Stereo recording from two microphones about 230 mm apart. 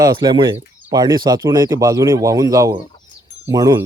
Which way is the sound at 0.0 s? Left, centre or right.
Centre.